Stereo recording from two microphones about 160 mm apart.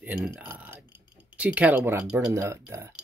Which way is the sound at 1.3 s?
10° right (ahead or behind).